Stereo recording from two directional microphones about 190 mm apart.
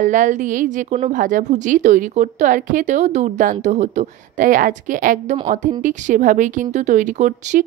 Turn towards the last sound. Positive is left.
turn(degrees=-40)  # may be behind; listen again after turning